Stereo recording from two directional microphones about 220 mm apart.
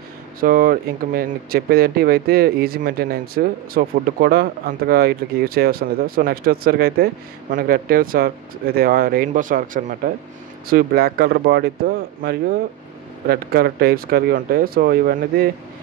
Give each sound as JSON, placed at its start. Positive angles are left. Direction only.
{"t": 0.4, "sound": "speech", "side_deg": -40}
{"t": 13.3, "sound": "speech", "side_deg": -45}